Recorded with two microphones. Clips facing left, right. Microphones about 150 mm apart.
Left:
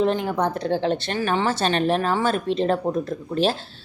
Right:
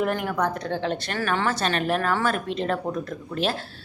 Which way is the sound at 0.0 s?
25° left (ahead or behind).